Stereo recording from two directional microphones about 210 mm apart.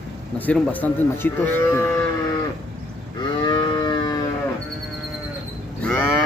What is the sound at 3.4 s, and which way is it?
Livestock, 20° left (ahead or behind).